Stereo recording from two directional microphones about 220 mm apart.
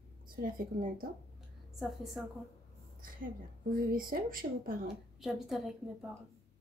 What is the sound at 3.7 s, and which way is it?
A woman's voice, 40° right (ahead or behind).